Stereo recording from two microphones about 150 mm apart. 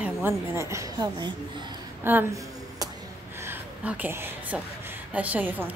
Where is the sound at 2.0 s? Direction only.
15° right (ahead or behind).